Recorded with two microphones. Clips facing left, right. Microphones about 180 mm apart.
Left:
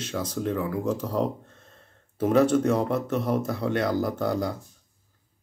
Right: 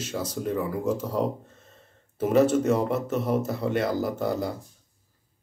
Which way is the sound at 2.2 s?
5° right (ahead or behind).